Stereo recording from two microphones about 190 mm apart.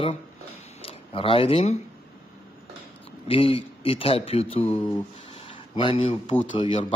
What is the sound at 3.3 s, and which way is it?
Speech, 30° left (ahead or behind).